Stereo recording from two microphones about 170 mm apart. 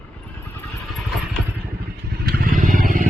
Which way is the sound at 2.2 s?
55° right (ahead or behind).